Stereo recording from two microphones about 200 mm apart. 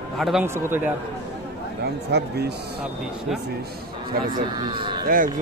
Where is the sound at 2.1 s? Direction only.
55° right (ahead or behind).